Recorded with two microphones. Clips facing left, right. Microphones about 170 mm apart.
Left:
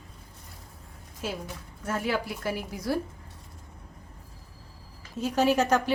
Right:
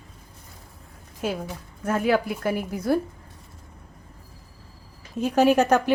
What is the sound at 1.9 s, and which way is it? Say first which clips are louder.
A woman's voice: right 7 dB; 55° right (ahead or behind).